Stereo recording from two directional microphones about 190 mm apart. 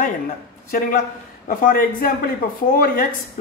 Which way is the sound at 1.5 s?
50° left (ahead or behind).